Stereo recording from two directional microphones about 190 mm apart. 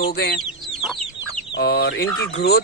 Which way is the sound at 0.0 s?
55° left (ahead or behind).